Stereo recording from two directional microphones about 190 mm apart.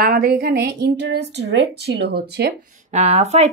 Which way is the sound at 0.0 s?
55° right (ahead or behind).